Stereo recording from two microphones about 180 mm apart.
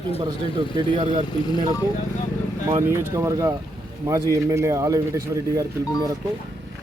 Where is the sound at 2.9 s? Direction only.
15° right (ahead or behind).